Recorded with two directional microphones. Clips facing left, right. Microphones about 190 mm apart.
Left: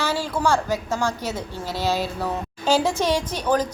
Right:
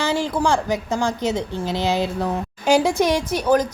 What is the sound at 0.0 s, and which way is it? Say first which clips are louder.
A woman's voice: right 3 dB; 15° right (ahead or behind).